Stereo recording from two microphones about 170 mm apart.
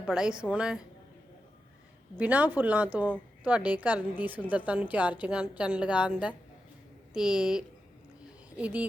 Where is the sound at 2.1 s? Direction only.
10° right (ahead or behind).